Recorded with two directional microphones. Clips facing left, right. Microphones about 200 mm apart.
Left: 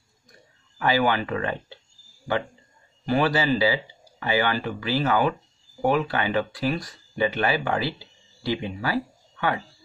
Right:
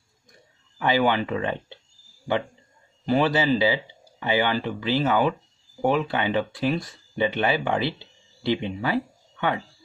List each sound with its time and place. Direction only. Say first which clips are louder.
0.7 s speech: right 1 dB; 20° right (ahead or behind)